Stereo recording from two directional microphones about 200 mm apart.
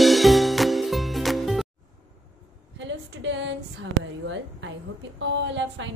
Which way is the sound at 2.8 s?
65° right (ahead or behind).